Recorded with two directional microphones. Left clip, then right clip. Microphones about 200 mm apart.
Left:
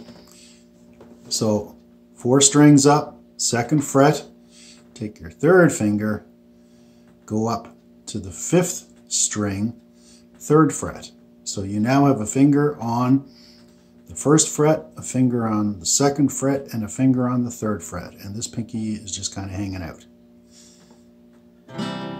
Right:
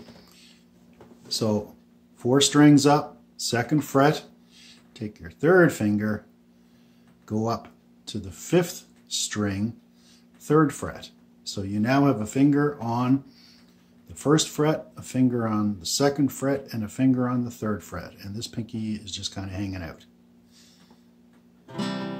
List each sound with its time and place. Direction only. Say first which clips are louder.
1.3 s speech: left 4 dB; 10° right (ahead or behind)
7.2 s speech: left 4 dB; 10° right (ahead or behind)
21.6 s music: left 2 dB; 30° right (ahead or behind)